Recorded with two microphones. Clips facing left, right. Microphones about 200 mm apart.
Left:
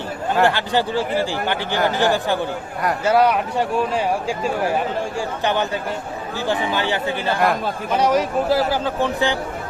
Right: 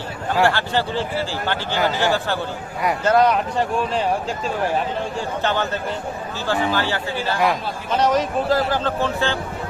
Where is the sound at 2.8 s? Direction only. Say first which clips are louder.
Even; 5° left (ahead or behind).